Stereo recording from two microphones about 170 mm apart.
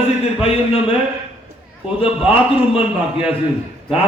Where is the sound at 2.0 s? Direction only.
35° left (ahead or behind).